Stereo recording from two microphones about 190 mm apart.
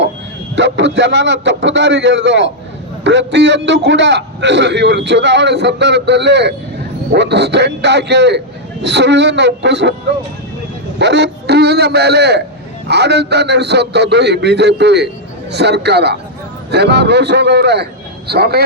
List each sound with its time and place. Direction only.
0.5 s a man's voice: 65° right (ahead or behind)
10.9 s a man's voice: 65° right (ahead or behind)